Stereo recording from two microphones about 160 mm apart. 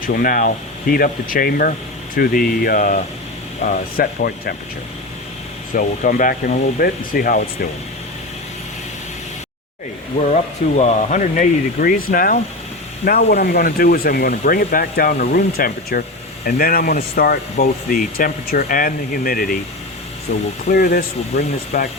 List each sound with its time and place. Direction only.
0.0 s speech: 65° left (ahead or behind)
5.7 s speech: 60° left (ahead or behind)
10.8 s speech: 45° left (ahead or behind); by 12.4 s 60° left (ahead or behind)
13.1 s speech: 85° left; by 20.4 s 60° left (ahead or behind)
20.7 s speech: 70° left (ahead or behind)